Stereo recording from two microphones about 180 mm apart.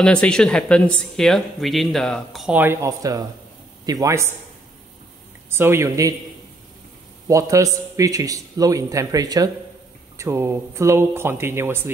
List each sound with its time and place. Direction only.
0.0 s speech: 5° left (ahead or behind); by 4.3 s 15° right (ahead or behind)
5.5 s speech: 15° right (ahead or behind)
7.2 s a man's voice: 15° right (ahead or behind)